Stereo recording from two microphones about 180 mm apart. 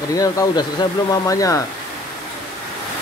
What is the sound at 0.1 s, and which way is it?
Speech, 20° left (ahead or behind).